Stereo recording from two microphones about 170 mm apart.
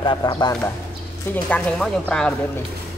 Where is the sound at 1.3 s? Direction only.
5° left (ahead or behind).